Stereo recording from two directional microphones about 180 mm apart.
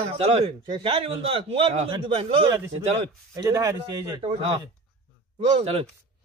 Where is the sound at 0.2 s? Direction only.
35° right (ahead or behind).